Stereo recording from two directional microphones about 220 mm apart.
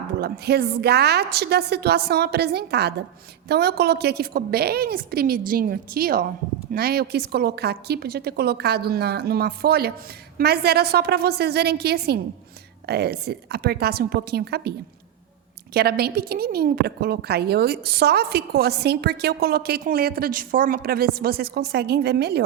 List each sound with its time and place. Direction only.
0.2 s a woman's voice: 45° right (ahead or behind)
15.7 s a woman's voice: 45° right (ahead or behind)